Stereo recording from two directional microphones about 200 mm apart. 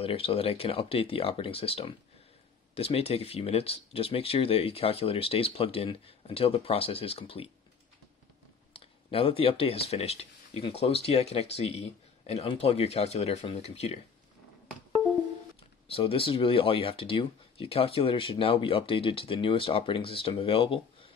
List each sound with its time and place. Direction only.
0.0 s speech: 30° left (ahead or behind)
8.7 s speech: 30° left (ahead or behind)
15.9 s speech: 25° left (ahead or behind)